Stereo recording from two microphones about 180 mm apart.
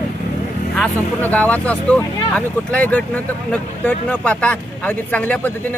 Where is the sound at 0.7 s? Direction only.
10° left (ahead or behind).